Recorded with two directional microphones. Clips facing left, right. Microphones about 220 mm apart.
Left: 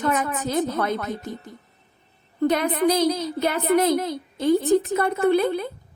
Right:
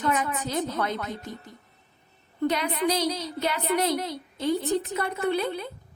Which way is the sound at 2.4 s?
50° left (ahead or behind).